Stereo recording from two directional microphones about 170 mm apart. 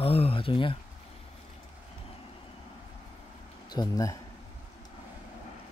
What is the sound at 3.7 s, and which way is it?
Speech, 20° left (ahead or behind).